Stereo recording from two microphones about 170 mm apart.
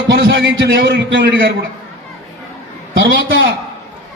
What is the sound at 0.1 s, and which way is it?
A man's voice, 75° right (ahead or behind).